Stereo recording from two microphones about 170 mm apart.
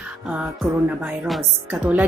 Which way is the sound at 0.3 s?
5° right (ahead or behind).